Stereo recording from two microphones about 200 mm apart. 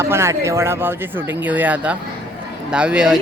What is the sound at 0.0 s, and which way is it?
Speech, 15° right (ahead or behind).